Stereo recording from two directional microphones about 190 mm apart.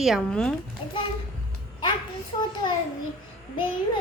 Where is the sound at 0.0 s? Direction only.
Centre (ahead or behind).